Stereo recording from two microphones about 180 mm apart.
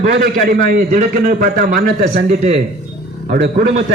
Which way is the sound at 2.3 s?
35° right (ahead or behind).